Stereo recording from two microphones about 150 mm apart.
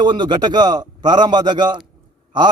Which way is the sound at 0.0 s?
30° right (ahead or behind).